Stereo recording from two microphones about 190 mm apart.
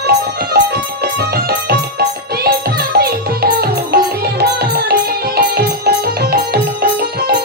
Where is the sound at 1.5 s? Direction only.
55° right (ahead or behind).